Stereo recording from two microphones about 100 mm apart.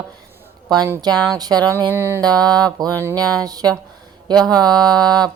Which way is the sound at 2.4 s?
40° right (ahead or behind).